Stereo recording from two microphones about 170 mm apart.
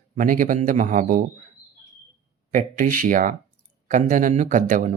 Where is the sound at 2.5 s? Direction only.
50° right (ahead or behind).